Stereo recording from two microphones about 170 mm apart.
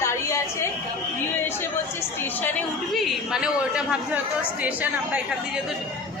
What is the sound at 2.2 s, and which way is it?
A woman's voice, 10° left (ahead or behind).